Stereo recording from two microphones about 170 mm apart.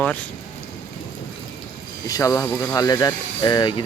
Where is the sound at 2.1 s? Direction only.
20° left (ahead or behind).